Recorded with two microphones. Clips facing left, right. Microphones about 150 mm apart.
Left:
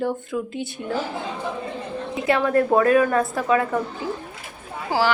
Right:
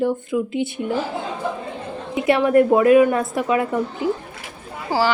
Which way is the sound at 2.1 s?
20° right (ahead or behind).